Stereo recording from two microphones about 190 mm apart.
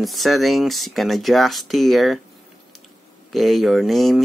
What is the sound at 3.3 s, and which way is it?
Speech, centre (ahead or behind).